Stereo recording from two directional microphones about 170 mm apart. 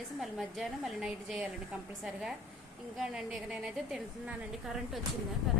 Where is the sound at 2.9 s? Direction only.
5° right (ahead or behind).